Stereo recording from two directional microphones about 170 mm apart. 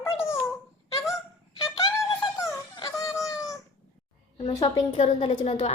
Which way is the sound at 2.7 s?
20° left (ahead or behind).